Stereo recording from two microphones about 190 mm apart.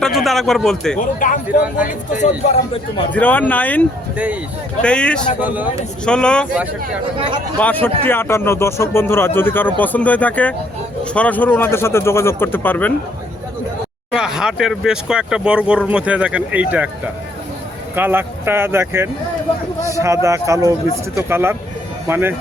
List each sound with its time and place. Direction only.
0.0 s a man's voice: centre (ahead or behind)
0.9 s a man's voice: 45° left (ahead or behind)
3.1 s a man's voice: 10° left (ahead or behind)
5.4 s speech: 10° right (ahead or behind)
6.1 s speech: 5° left (ahead or behind)
7.6 s a man's voice: 10° left (ahead or behind)
14.2 s speech: 5° right (ahead or behind)
17.9 s speech: 10° right (ahead or behind)